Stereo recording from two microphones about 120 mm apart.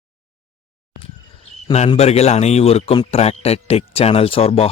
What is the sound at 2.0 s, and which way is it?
Speech, 60° left (ahead or behind).